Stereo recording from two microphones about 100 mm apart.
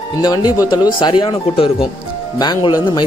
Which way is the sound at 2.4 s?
40° left (ahead or behind).